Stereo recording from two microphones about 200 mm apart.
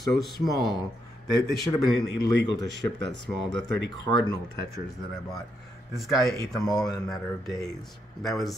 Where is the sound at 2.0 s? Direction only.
55° left (ahead or behind).